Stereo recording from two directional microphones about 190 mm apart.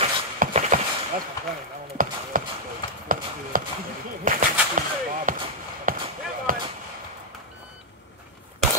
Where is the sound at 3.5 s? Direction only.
45° right (ahead or behind).